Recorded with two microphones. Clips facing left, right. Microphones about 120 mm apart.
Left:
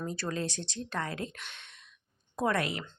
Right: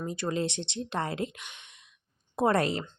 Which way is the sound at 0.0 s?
15° right (ahead or behind).